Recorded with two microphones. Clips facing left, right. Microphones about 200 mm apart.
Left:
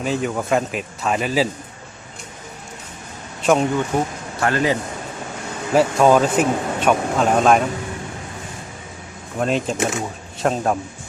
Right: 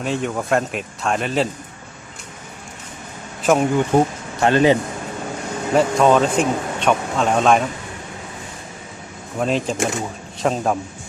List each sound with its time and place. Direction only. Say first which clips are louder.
0.0 s speech: left 1 dB; centre (ahead or behind)
3.4 s speech: even; 5° right (ahead or behind)
3.9 s a man's voice: right 5 dB; 30° right (ahead or behind)
5.7 s speech: left 1 dB; 5° left (ahead or behind)
9.4 s speech: even; centre (ahead or behind)